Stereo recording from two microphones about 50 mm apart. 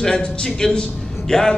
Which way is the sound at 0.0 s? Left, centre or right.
Centre.